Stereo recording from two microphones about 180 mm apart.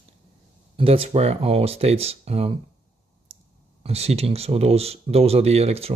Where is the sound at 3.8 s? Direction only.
35° right (ahead or behind).